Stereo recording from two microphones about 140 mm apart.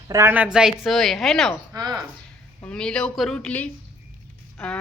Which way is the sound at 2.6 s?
5° left (ahead or behind).